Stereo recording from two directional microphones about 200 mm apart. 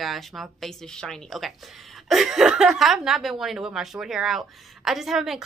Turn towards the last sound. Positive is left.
turn(degrees=0)  # may be behind; listen again after turning